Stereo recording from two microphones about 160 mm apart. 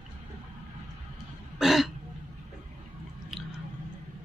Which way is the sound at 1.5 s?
Centre (ahead or behind).